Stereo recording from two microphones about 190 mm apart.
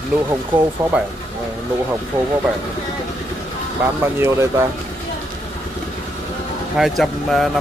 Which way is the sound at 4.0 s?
15° right (ahead or behind).